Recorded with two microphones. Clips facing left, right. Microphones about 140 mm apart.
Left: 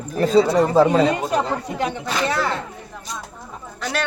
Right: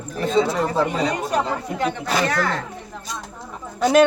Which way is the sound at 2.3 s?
5° left (ahead or behind).